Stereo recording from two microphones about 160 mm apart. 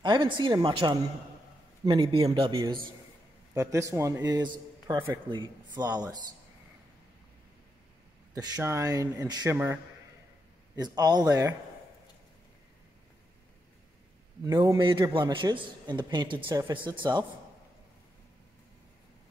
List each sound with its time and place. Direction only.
0.0 s a man's voice: 30° right (ahead or behind)
3.5 s a man's voice: 20° right (ahead or behind)
5.8 s a man's voice: 25° right (ahead or behind)
8.4 s a man's voice: 20° right (ahead or behind)
10.8 s a man's voice: 25° right (ahead or behind)
14.4 s a man's voice: 20° right (ahead or behind)